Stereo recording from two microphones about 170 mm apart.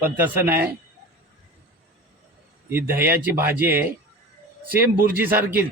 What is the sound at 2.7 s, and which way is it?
Speech, 10° right (ahead or behind).